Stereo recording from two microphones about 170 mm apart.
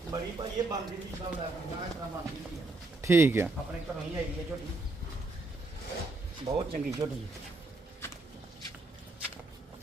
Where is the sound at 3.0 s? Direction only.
15° right (ahead or behind).